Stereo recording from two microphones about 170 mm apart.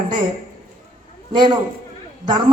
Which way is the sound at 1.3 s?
25° right (ahead or behind).